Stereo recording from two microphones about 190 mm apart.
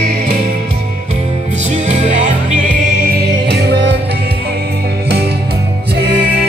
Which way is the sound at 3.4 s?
60° right (ahead or behind).